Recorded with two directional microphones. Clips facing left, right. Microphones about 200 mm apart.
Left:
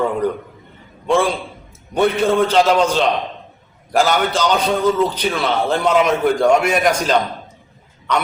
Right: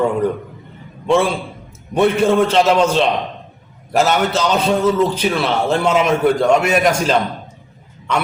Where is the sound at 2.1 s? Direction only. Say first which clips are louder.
Right 2 dB; 30° right (ahead or behind).